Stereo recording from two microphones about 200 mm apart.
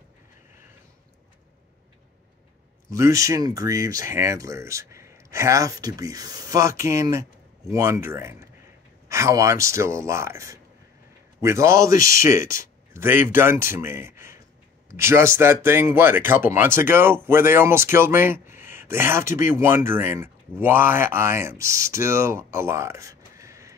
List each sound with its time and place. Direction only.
2.9 s speech: 15° right (ahead or behind)